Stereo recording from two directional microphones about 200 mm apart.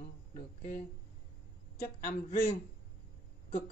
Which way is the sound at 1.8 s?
40° left (ahead or behind).